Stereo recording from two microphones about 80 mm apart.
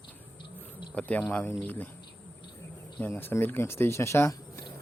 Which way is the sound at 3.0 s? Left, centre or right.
Left.